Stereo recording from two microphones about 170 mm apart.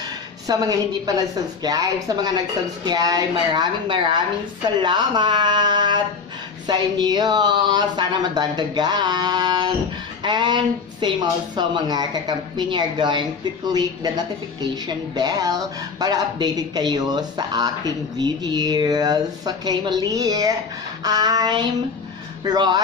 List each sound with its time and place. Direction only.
0.5 s a woman's voice: 20° right (ahead or behind)